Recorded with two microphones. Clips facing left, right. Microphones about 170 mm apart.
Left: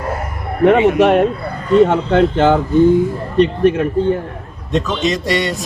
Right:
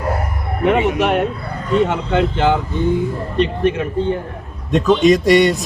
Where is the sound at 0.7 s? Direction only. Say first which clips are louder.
Left 4 dB; 35° left (ahead or behind).